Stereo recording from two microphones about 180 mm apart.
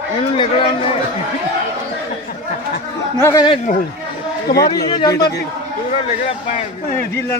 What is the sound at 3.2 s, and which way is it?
Speech, 15° left (ahead or behind).